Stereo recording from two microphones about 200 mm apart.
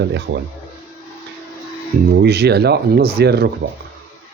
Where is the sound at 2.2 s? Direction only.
55° right (ahead or behind).